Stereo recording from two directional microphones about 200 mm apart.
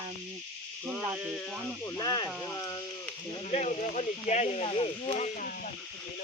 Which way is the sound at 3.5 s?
35° left (ahead or behind).